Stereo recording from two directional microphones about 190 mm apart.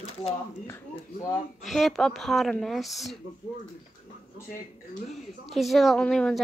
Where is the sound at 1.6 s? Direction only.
Centre (ahead or behind).